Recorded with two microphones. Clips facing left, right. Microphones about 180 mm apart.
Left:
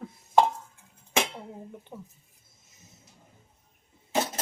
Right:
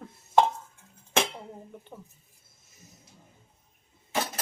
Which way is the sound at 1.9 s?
5° left (ahead or behind).